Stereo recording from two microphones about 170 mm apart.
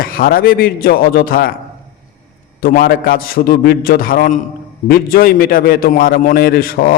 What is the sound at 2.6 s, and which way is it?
A man's voice, 60° left (ahead or behind).